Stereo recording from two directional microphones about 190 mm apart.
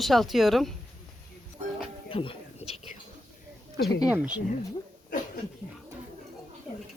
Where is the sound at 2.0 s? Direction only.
30° left (ahead or behind).